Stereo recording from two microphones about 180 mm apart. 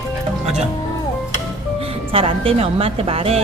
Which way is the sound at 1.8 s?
30° right (ahead or behind).